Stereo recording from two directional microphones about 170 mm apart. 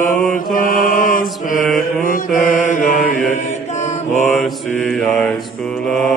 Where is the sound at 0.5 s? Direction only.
55° left (ahead or behind).